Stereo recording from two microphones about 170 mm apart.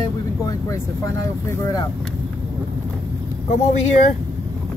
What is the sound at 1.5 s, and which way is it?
Speech, 20° left (ahead or behind).